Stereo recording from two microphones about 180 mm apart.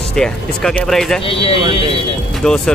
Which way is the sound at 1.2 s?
30° left (ahead or behind).